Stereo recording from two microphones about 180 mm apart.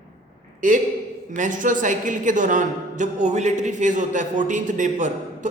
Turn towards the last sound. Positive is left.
turn(degrees=-45)  # may be behind; listen again after turning